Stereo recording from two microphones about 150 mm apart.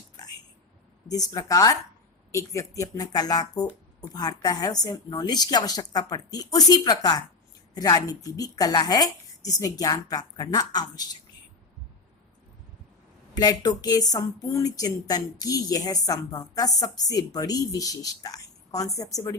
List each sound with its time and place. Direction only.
0.2 s a sound: 25° left (ahead or behind)
1.0 s a woman's voice: 25° left (ahead or behind)
13.3 s a woman's voice: 25° left (ahead or behind)